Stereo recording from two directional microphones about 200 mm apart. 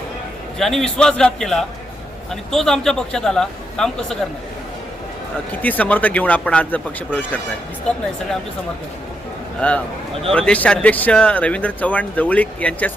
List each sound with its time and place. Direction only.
0.6 s a man's voice: centre (ahead or behind)
5.6 s speech: 10° left (ahead or behind)
9.6 s speech: 5° left (ahead or behind)